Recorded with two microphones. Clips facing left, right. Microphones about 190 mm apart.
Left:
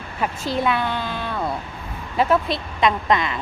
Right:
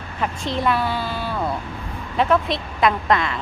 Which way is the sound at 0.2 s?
5° left (ahead or behind).